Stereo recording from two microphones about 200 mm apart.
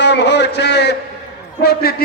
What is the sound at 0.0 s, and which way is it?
A man's voice, 60° left (ahead or behind).